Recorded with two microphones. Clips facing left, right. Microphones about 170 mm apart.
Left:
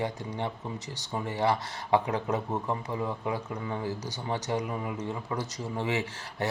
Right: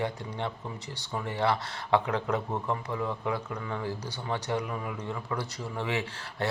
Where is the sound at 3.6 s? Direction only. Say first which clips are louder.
Left 1 dB; 25° left (ahead or behind).